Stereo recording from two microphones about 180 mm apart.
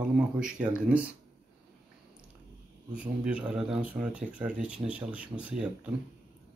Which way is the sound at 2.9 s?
5° right (ahead or behind).